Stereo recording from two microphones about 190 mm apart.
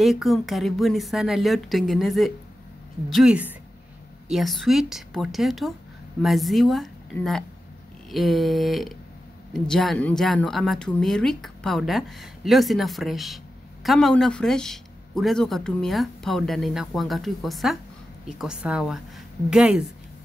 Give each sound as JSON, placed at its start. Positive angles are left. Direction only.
{"t": 0.0, "sound": "speech", "side_deg": 0}